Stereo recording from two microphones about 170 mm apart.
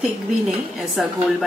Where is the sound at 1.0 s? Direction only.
5° right (ahead or behind).